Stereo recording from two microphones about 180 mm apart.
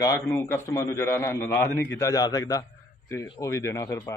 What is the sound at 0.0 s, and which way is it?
A man's voice, 15° left (ahead or behind).